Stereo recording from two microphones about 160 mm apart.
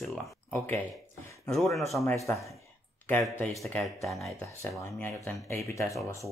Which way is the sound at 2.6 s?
15° left (ahead or behind).